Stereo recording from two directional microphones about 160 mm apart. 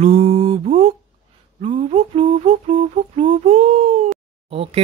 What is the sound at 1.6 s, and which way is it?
Music, 35° right (ahead or behind).